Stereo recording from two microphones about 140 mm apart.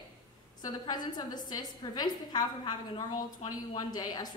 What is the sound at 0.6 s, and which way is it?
A woman's voice, 30° left (ahead or behind).